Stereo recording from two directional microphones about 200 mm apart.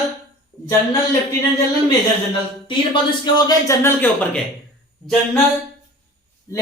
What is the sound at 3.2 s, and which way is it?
Speech, 15° left (ahead or behind).